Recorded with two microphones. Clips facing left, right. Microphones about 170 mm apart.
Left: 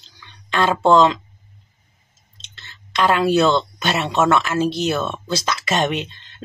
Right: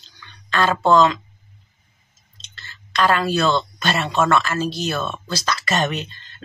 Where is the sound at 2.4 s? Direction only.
25° left (ahead or behind).